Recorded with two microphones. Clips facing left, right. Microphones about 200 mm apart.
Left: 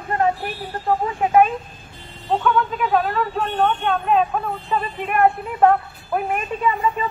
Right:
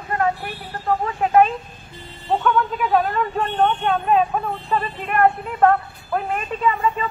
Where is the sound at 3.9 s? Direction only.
Centre (ahead or behind).